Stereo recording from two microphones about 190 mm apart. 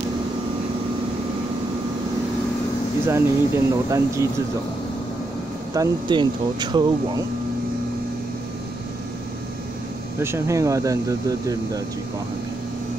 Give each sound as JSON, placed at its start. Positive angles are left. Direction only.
{"t": 3.1, "sound": "speech", "side_deg": -15}
{"t": 5.8, "sound": "speech", "side_deg": -25}
{"t": 10.1, "sound": "speech", "side_deg": -15}